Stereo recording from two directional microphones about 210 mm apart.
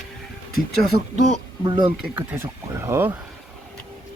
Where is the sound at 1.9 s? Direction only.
10° right (ahead or behind).